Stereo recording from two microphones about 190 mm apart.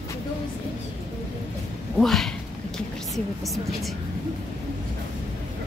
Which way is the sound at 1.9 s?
Centre (ahead or behind).